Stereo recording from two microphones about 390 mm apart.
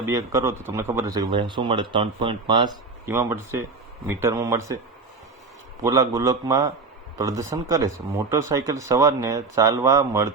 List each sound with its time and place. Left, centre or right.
0.0 s speech: centre
5.8 s speech: centre